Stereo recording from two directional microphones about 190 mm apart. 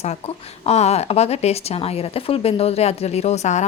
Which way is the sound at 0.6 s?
35° left (ahead or behind).